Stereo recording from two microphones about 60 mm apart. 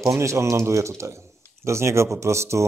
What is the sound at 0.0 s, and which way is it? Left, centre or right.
Speech, right.